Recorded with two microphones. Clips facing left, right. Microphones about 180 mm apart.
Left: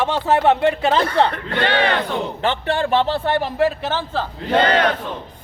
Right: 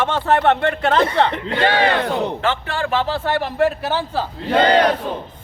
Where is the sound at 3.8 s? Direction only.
10° right (ahead or behind).